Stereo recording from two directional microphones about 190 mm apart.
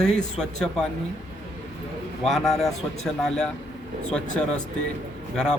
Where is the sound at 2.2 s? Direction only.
Centre (ahead or behind).